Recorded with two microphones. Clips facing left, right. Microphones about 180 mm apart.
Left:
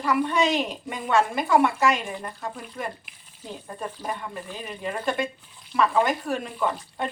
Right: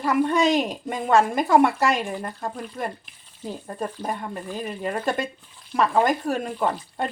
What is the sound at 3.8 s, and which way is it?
A woman's voice, 40° right (ahead or behind).